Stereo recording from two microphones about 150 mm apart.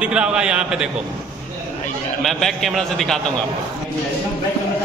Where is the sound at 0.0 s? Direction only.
5° right (ahead or behind).